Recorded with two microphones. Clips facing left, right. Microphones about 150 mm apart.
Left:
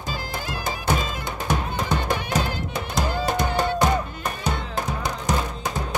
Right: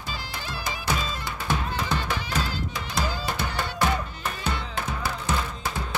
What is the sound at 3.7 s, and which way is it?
Music, 15° left (ahead or behind).